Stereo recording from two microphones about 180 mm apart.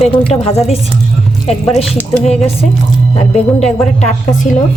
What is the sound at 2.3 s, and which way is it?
A woman's voice, 35° left (ahead or behind).